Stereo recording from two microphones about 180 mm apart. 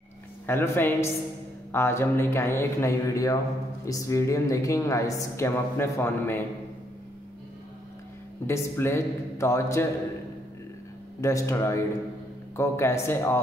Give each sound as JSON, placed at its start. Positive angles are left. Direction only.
{"t": 0.5, "sound": "speech", "side_deg": 10}
{"t": 8.5, "sound": "speech", "side_deg": 15}
{"t": 11.1, "sound": "speech", "side_deg": 15}